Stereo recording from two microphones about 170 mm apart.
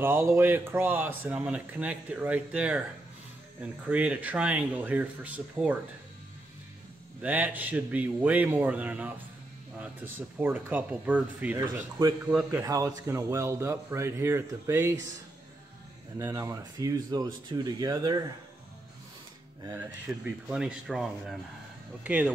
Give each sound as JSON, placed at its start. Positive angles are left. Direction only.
{"t": 0.0, "sound": "speech", "side_deg": -15}
{"t": 7.2, "sound": "speech", "side_deg": -10}
{"t": 12.3, "sound": "speech", "side_deg": -5}
{"t": 12.6, "sound": "speech", "side_deg": -20}
{"t": 16.2, "sound": "speech", "side_deg": -20}
{"t": 19.6, "sound": "speech", "side_deg": -10}